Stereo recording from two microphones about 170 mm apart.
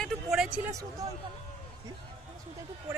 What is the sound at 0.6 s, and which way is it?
Speech, 20° right (ahead or behind).